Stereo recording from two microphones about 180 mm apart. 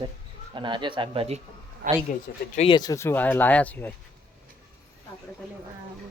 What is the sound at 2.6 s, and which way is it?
Speech, 25° left (ahead or behind).